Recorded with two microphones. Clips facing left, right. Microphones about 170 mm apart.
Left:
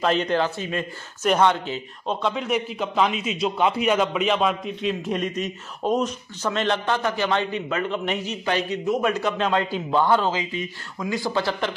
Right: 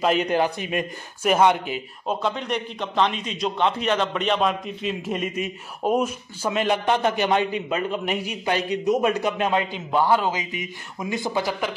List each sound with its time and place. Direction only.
0.0 s a man's voice: 10° right (ahead or behind)
2.2 s a man's voice: 5° left (ahead or behind); by 11.7 s 15° right (ahead or behind)